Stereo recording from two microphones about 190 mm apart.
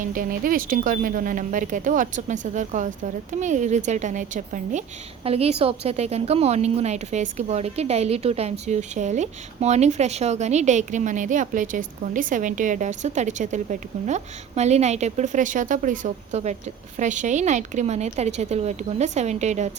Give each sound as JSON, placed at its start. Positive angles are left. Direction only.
{"t": 0.0, "sound": "a woman's voice", "side_deg": -45}